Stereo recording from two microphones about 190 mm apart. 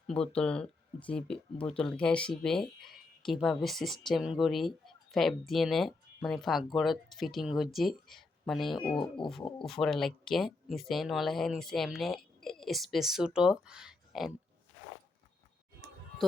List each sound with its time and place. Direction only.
0.1 s speech: 5° left (ahead or behind)
9.0 s pig: 25° left (ahead or behind)
9.6 s speech: centre (ahead or behind)